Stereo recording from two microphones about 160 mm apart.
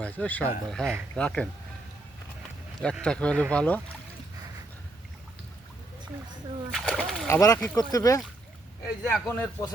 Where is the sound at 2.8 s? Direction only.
5° left (ahead or behind).